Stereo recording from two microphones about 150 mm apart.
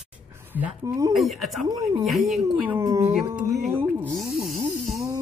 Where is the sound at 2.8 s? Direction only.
20° right (ahead or behind).